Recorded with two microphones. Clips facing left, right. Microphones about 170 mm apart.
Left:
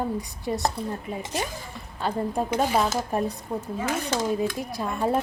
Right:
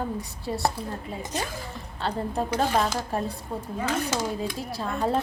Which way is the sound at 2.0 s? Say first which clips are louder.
Left 2 dB; 10° left (ahead or behind).